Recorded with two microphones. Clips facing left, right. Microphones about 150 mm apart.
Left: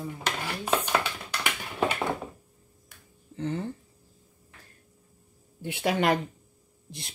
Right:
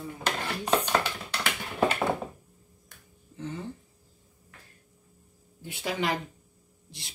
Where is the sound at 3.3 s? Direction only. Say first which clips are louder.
Left 6 dB; 65° left (ahead or behind).